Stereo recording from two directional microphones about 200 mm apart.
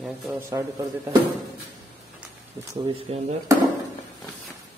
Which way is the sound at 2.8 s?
25° right (ahead or behind).